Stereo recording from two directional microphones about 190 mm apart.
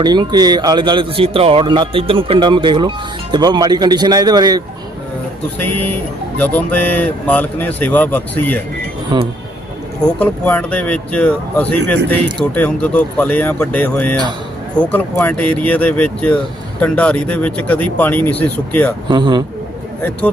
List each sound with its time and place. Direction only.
0.0 s speech: 20° right (ahead or behind)
6.4 s speech: 10° left (ahead or behind)
10.2 s speech: 10° left (ahead or behind)
19.1 s speech: 25° right (ahead or behind)
20.0 s speech: 10° left (ahead or behind)